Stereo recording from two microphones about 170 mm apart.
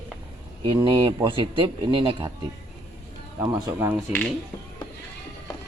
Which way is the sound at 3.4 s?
25° right (ahead or behind).